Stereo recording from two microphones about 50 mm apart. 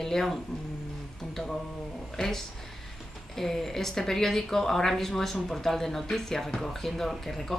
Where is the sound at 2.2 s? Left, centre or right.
Centre.